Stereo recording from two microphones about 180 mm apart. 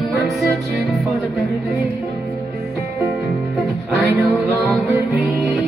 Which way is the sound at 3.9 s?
Centre (ahead or behind).